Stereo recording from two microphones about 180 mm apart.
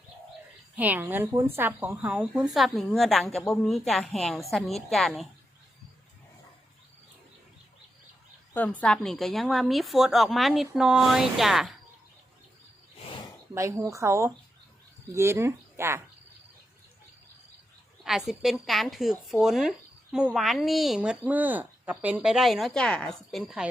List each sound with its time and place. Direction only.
0.8 s speech: 10° right (ahead or behind)
8.8 s speech: 5° left (ahead or behind)
13.5 s speech: 15° right (ahead or behind)
18.0 s speech: centre (ahead or behind)